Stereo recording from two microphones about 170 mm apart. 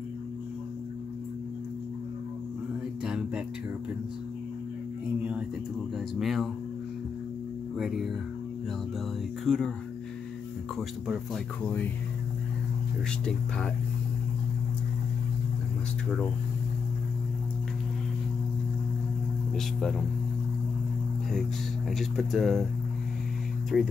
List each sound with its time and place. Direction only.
3.1 s speech: 5° right (ahead or behind)
6.1 s speech: centre (ahead or behind)
7.7 s speech: centre (ahead or behind)
9.4 s speech: 5° left (ahead or behind)
10.8 s speech: centre (ahead or behind)
21.9 s speech: centre (ahead or behind)
23.7 s speech: centre (ahead or behind)